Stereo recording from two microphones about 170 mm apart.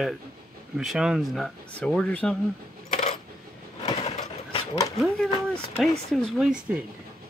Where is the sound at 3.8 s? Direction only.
40° left (ahead or behind).